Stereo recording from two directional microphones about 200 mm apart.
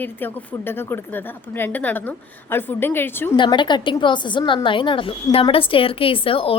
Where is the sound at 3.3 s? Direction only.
25° left (ahead or behind).